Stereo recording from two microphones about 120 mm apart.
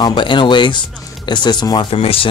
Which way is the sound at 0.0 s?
40° left (ahead or behind).